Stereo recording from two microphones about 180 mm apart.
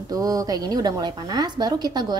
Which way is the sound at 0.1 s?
20° right (ahead or behind).